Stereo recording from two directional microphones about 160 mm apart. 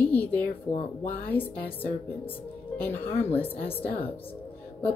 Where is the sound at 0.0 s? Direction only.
10° left (ahead or behind).